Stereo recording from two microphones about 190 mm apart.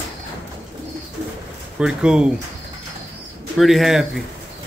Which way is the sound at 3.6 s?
Centre (ahead or behind).